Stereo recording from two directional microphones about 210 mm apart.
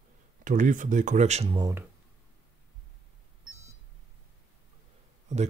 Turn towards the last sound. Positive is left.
turn(degrees=-35)  # may be behind; listen again after turning